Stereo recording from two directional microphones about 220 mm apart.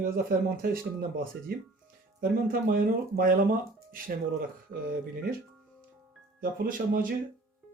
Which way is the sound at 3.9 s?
40° right (ahead or behind).